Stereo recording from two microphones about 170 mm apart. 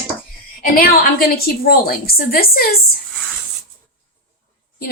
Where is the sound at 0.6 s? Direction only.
60° left (ahead or behind).